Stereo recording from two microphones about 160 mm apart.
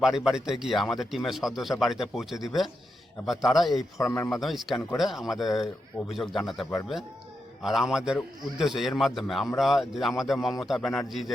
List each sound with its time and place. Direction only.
0.0 s a man's voice: 5° right (ahead or behind)
3.9 s a man's voice: 20° left (ahead or behind)
4.3 s a man's voice: centre (ahead or behind)